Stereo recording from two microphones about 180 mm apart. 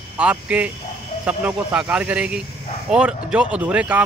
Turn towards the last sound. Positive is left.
turn(degrees=-5)  # may be behind; listen again after turning